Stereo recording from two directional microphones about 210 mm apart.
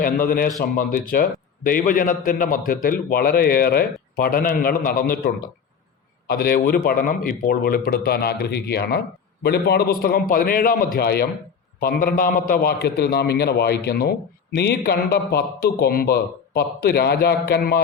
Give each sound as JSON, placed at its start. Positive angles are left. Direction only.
{"t": 0.0, "sound": "a man's voice", "side_deg": 45}